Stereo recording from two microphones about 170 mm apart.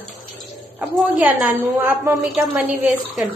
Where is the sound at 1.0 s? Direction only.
10° right (ahead or behind).